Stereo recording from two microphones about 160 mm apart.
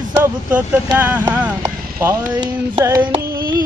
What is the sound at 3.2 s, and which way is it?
Carnatic music, 65° right (ahead or behind).